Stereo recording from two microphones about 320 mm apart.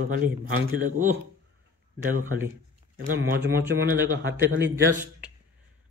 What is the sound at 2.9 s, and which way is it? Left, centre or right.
Speech, right.